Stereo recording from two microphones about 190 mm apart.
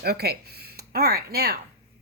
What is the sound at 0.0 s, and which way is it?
Speech, 55° right (ahead or behind).